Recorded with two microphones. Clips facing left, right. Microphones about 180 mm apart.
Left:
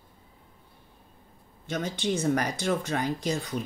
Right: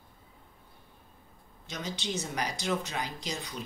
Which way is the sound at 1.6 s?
55° left (ahead or behind).